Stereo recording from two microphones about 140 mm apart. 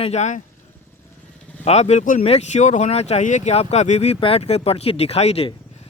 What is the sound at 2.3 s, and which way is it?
Speech, 50° left (ahead or behind).